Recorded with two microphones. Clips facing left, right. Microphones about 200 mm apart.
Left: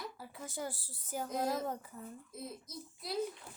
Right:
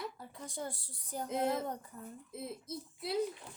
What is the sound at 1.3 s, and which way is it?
Speech, 25° right (ahead or behind).